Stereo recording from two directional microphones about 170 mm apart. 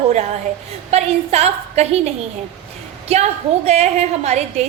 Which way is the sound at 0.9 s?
40° right (ahead or behind).